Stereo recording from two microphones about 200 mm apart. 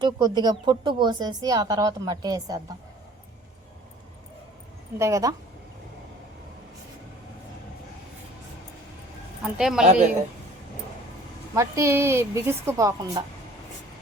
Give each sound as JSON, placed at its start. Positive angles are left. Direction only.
{"t": 0.0, "sound": "a woman's voice", "side_deg": -20}
{"t": 4.9, "sound": "a woman's voice", "side_deg": -15}
{"t": 9.6, "sound": "speech", "side_deg": -5}
{"t": 11.5, "sound": "a woman's voice", "side_deg": -15}